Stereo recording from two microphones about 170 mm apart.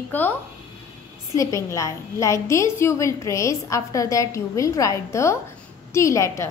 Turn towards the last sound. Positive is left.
turn(degrees=15)  # may be behind; listen again after turning